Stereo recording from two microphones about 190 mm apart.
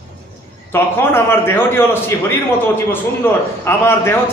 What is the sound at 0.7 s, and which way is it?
A man's voice, 10° left (ahead or behind).